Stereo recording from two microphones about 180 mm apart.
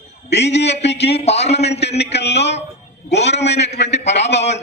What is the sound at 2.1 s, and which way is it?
A man's voice, 70° left (ahead or behind).